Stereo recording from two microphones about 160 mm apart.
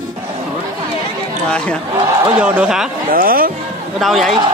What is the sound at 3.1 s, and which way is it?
Speech, 65° right (ahead or behind).